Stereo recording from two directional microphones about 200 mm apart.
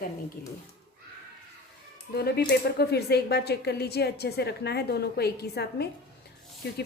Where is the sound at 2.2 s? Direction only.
50° left (ahead or behind).